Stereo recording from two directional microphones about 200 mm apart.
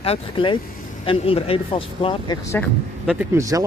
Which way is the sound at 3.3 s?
15° right (ahead or behind).